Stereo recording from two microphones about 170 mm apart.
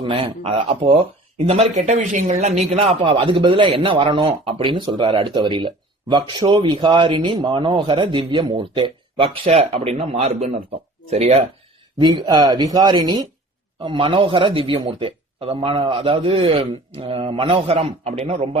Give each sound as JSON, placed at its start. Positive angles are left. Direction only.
{"t": 0.0, "sound": "speech", "side_deg": -30}
{"t": 11.9, "sound": "speech", "side_deg": -25}